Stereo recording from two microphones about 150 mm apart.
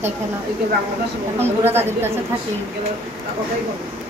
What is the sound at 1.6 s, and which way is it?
Speech, 15° right (ahead or behind).